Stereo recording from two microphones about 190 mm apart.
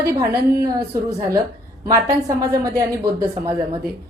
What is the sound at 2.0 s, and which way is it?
A woman's voice, 15° right (ahead or behind).